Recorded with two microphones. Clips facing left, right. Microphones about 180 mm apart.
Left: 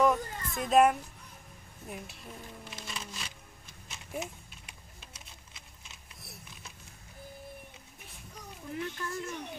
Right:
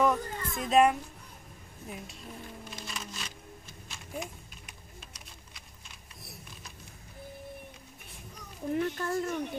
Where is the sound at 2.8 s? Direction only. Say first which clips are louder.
Even; 5° left (ahead or behind).